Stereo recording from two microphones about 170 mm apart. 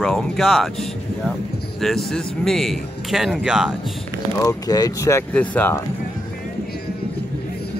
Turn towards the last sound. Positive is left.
turn(degrees=10)  # may be behind; listen again after turning